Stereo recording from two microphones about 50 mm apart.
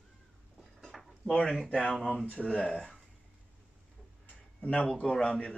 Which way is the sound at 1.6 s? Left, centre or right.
Left.